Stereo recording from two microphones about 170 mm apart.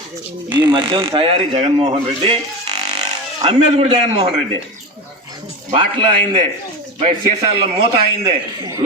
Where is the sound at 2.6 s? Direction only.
40° right (ahead or behind).